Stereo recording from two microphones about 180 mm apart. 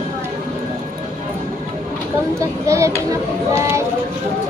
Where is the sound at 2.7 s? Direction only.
15° right (ahead or behind).